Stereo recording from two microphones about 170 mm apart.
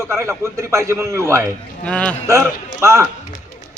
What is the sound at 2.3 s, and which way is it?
Speech, 15° right (ahead or behind).